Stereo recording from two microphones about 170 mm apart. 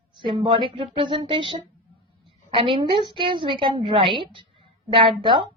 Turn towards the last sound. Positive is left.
turn(degrees=-30)  # may be behind; listen again after turning